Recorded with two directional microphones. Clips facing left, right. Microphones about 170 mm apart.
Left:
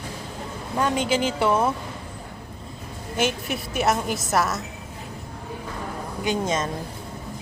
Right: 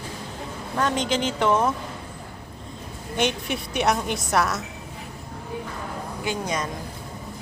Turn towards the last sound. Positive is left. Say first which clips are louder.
# left 3 dB
turn(degrees=25)  # may be behind; listen again after turning